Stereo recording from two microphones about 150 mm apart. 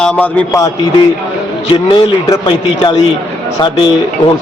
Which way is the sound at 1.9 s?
35° left (ahead or behind).